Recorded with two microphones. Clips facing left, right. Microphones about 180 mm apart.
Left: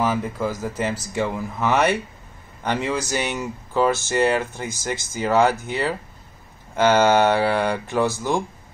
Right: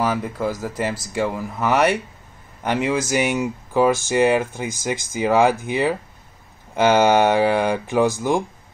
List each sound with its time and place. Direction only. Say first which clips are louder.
0.0 s speech: right 1 dB; centre (ahead or behind)